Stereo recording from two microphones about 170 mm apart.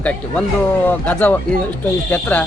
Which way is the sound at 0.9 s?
10° left (ahead or behind).